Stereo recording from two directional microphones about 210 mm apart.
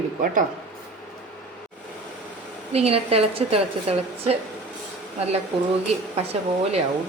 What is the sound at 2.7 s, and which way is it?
Speech, 30° right (ahead or behind).